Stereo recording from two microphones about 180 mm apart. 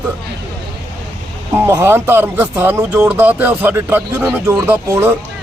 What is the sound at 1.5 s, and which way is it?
Speech, 15° right (ahead or behind).